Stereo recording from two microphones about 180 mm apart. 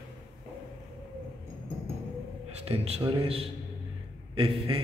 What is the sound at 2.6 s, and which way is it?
A man's voice, 35° right (ahead or behind).